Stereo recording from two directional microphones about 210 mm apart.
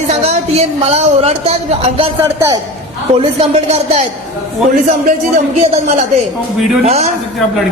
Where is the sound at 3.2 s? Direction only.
25° right (ahead or behind).